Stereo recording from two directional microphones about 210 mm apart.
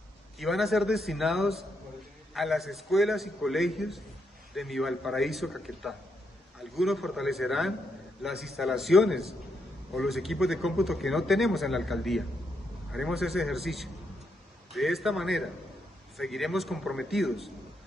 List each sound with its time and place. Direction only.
0.4 s speech: centre (ahead or behind)